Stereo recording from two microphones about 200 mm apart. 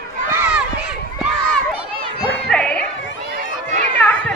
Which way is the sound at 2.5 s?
5° left (ahead or behind).